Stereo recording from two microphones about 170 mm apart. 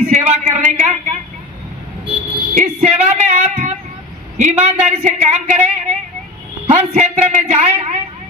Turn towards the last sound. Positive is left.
turn(degrees=-40)  # may be behind; listen again after turning